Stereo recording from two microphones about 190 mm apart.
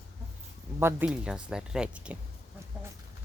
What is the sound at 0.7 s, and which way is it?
Speech, 10° right (ahead or behind).